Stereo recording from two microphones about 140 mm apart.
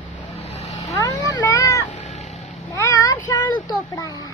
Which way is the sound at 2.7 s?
25° left (ahead or behind).